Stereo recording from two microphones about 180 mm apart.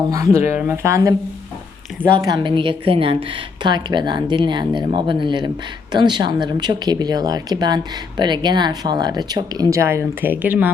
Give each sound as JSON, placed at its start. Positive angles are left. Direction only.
{"t": 0.1, "sound": "speech", "side_deg": -15}
{"t": 2.1, "sound": "speech", "side_deg": -25}